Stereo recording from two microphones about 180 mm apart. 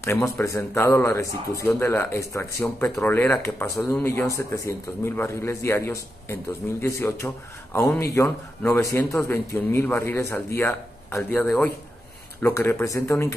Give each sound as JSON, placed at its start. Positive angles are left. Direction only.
{"t": 0.0, "sound": "speech", "side_deg": 15}